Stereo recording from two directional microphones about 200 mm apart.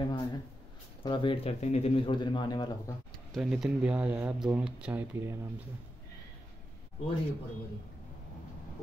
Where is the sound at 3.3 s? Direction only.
Centre (ahead or behind).